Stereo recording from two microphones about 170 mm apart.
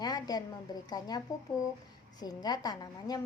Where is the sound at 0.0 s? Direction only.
25° left (ahead or behind).